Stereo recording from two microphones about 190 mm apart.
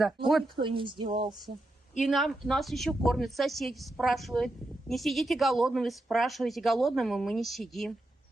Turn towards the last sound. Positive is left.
turn(degrees=0)  # may be behind; listen again after turning